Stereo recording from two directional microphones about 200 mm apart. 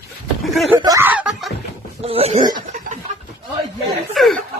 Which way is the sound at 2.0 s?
30° right (ahead or behind).